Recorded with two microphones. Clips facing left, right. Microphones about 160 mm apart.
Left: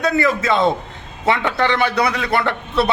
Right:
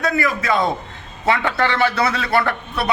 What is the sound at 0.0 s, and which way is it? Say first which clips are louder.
A man's voice: left 3 dB; 25° left (ahead or behind).